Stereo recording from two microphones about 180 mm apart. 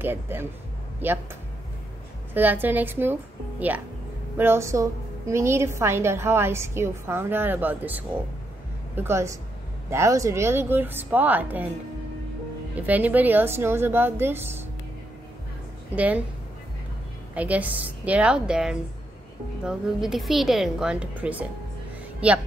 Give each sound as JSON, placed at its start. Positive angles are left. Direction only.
{"t": 0.0, "sound": "a woman's voice", "side_deg": -10}
{"t": 2.3, "sound": "a woman's voice", "side_deg": -10}
{"t": 12.8, "sound": "a woman's voice", "side_deg": -10}
{"t": 15.9, "sound": "a woman's voice", "side_deg": -10}
{"t": 17.3, "sound": "a woman's voice", "side_deg": -10}